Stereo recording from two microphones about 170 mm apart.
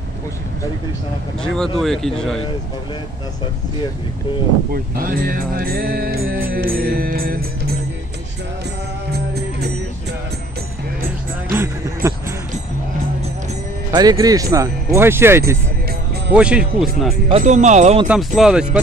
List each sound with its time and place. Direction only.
1.4 s speech: 5° left (ahead or behind)
4.9 s music: 55° right (ahead or behind)
9.1 s music: 70° right (ahead or behind)
11.5 s music: 15° right (ahead or behind)
13.9 s speech: 20° right (ahead or behind); by 17.1 s 5° right (ahead or behind)
17.4 s speech: 45° right (ahead or behind)
18.0 s speech: 5° right (ahead or behind)